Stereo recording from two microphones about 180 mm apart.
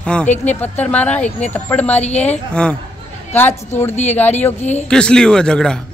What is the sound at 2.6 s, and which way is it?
Speech, 5° left (ahead or behind).